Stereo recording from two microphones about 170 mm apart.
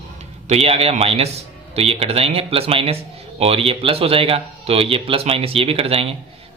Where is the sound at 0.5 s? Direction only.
35° right (ahead or behind).